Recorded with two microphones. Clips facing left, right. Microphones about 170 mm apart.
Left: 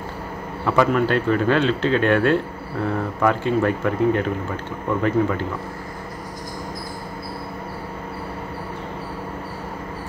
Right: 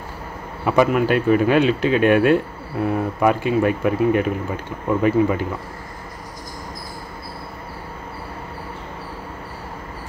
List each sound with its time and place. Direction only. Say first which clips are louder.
0.7 s speech: right 2 dB; 15° right (ahead or behind)